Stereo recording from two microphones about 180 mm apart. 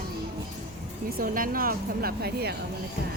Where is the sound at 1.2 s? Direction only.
50° right (ahead or behind).